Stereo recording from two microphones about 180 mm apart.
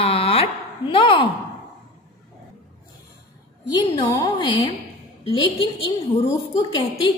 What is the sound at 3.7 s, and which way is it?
A woman's voice, 20° left (ahead or behind).